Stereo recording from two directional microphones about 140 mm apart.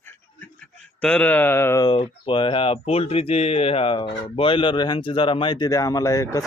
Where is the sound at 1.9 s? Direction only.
40° left (ahead or behind).